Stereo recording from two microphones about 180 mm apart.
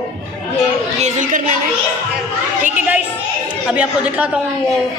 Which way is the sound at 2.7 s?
10° right (ahead or behind).